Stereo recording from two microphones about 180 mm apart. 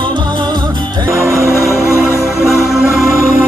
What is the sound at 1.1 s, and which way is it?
Music, 15° right (ahead or behind).